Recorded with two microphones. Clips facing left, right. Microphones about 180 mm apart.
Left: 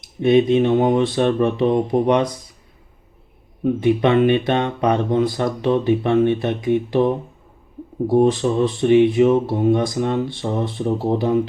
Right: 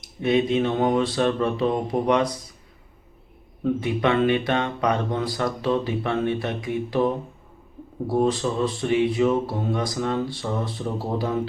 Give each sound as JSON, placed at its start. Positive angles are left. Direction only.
{"t": 0.2, "sound": "speech", "side_deg": 20}
{"t": 3.6, "sound": "speech", "side_deg": 20}
{"t": 8.1, "sound": "speech", "side_deg": 20}